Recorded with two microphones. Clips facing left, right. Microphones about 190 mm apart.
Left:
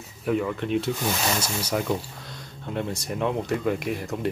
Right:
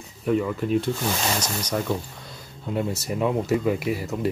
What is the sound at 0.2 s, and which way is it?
Speech, centre (ahead or behind).